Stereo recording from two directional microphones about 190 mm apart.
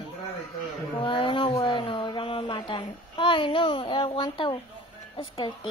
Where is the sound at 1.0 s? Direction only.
25° left (ahead or behind).